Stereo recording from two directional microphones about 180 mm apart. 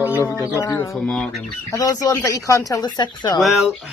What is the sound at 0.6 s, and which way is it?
Speech, 15° left (ahead or behind).